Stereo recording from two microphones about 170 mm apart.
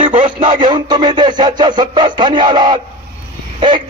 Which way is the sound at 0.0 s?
50° right (ahead or behind).